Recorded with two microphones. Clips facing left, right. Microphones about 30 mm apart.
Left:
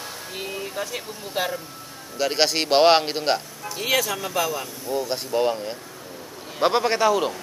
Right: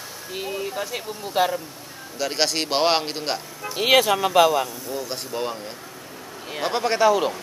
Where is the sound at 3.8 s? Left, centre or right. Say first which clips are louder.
Right 6 dB; right.